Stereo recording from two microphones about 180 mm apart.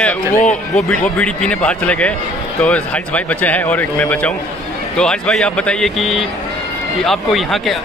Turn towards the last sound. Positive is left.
turn(degrees=0)  # may be behind; listen again after turning